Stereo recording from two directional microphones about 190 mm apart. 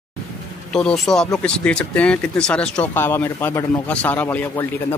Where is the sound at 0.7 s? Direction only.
5° left (ahead or behind).